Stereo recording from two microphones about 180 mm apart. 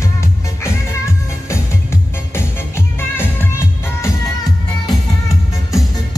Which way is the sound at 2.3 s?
10° left (ahead or behind).